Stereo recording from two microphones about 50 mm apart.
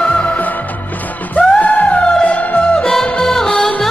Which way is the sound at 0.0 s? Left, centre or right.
Left.